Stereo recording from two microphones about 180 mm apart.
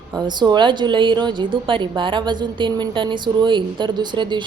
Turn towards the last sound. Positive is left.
turn(degrees=-25)  # may be behind; listen again after turning